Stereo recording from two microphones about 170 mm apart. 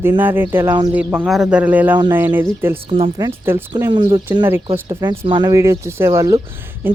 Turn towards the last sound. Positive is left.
turn(degrees=-10)  # may be behind; listen again after turning